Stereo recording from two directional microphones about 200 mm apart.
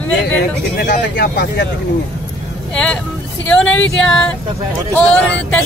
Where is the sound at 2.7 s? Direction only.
5° left (ahead or behind).